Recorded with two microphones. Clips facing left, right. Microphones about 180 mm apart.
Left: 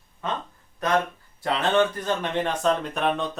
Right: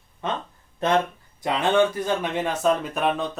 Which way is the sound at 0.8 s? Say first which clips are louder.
Right 2 dB; 25° right (ahead or behind).